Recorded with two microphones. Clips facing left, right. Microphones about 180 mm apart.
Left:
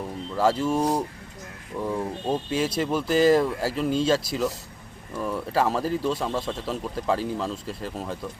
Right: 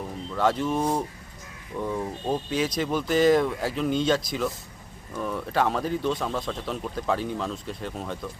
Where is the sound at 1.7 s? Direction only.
Centre (ahead or behind).